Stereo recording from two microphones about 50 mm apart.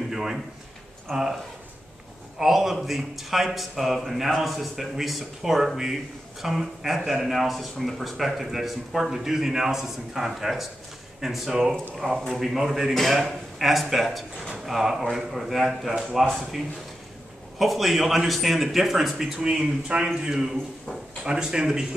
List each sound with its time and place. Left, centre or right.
0.1 s a sound: centre
1.1 s speech: centre
17.6 s speech: centre
19.3 s speech: centre